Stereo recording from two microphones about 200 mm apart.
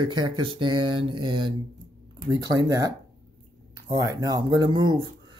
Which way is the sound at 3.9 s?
15° right (ahead or behind).